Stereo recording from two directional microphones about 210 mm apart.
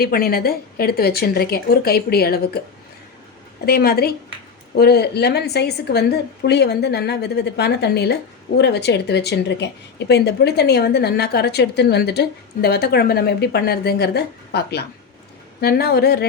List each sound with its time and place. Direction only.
0.0 s a woman's voice: 45° left (ahead or behind)
3.7 s a woman's voice: 50° left (ahead or behind)